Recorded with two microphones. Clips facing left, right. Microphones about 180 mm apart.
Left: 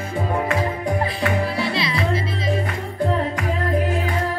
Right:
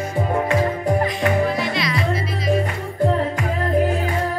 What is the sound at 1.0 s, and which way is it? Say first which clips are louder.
Music: right 2 dB; 30° left (ahead or behind).